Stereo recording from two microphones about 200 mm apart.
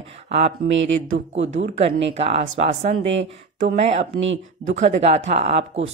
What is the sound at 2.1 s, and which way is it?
Speech, 30° right (ahead or behind).